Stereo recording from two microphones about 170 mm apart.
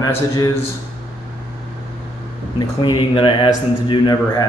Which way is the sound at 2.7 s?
30° left (ahead or behind).